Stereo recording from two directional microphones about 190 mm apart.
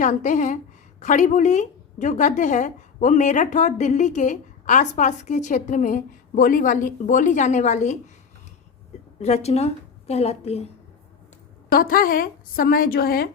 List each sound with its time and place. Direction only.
0.0 s a woman's voice: 40° left (ahead or behind)
9.1 s a woman's voice: 35° left (ahead or behind)
11.7 s a woman's voice: 50° left (ahead or behind)